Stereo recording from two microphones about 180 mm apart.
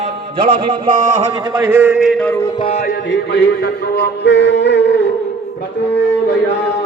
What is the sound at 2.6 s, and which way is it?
Music, 30° left (ahead or behind).